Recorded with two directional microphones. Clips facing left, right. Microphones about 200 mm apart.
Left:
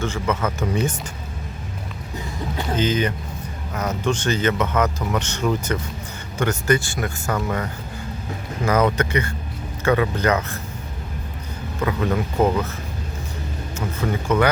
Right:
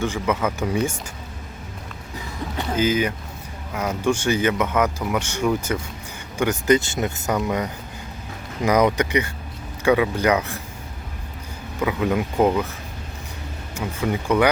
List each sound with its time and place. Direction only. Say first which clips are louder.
0.0 s speech: right 1 dB; 15° right (ahead or behind)
2.7 s speech: right 1 dB; 10° right (ahead or behind)
11.8 s speech: right 1 dB; 10° right (ahead or behind)
13.7 s speech: right 1 dB; 15° right (ahead or behind)